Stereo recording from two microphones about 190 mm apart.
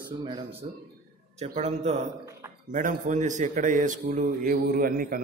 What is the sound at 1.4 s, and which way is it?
A man's voice, 35° right (ahead or behind).